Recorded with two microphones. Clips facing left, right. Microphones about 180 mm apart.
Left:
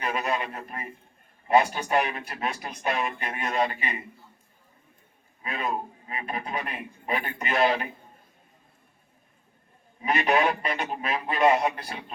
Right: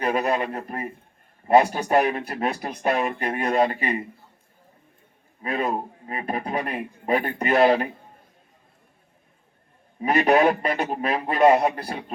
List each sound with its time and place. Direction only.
0.0 s a man's voice: 40° right (ahead or behind)
5.4 s a man's voice: 40° right (ahead or behind)
10.0 s a man's voice: 35° right (ahead or behind)